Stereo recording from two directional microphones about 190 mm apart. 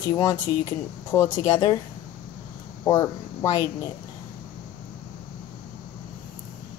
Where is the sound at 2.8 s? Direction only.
15° left (ahead or behind).